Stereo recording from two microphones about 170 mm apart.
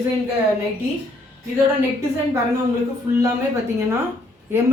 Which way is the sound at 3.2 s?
15° right (ahead or behind).